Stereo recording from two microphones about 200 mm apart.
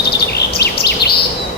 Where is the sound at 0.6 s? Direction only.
55° left (ahead or behind).